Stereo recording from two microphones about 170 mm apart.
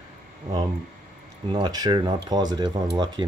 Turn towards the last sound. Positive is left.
turn(degrees=-25)  # may be behind; listen again after turning